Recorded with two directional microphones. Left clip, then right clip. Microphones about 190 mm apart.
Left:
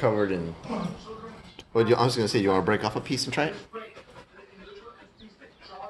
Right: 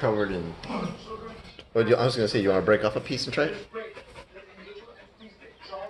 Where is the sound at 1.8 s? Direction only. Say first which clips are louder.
Right 1 dB; 55° left (ahead or behind).